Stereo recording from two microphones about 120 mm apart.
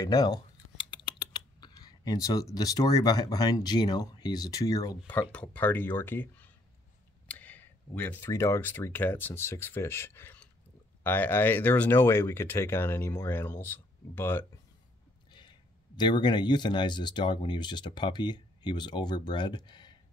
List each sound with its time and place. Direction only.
0.0 s speech: 35° left (ahead or behind)
5.0 s speech: 10° left (ahead or behind)
7.2 s a sound: 15° left (ahead or behind)
8.3 s speech: 20° left (ahead or behind)
16.0 s speech: 40° left (ahead or behind)